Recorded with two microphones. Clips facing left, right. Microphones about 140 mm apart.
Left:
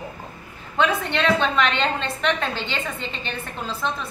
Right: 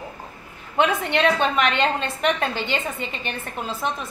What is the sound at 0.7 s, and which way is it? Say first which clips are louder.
A woman's voice: right 1 dB; 15° right (ahead or behind).